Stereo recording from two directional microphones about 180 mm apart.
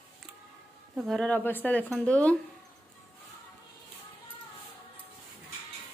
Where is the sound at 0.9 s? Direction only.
Centre (ahead or behind).